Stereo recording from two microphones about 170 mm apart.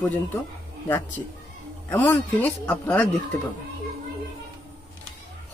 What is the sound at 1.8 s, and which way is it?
Speech, 10° left (ahead or behind).